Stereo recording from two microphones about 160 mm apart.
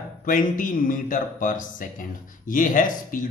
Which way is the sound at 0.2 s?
55° left (ahead or behind).